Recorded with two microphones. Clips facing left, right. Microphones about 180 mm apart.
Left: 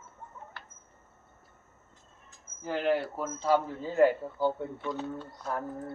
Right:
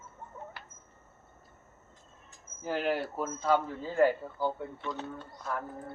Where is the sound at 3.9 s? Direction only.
20° left (ahead or behind).